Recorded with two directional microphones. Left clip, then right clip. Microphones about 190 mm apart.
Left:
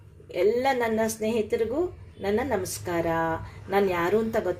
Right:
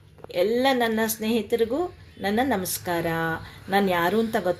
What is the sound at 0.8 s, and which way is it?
Speech, 15° right (ahead or behind).